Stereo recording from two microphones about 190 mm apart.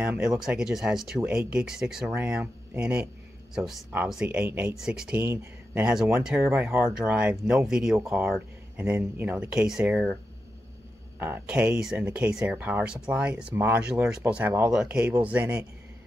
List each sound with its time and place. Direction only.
0.0 s speech: 5° right (ahead or behind)
11.1 s speech: 10° right (ahead or behind)